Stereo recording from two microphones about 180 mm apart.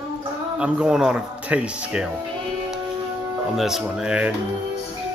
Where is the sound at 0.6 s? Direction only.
5° right (ahead or behind).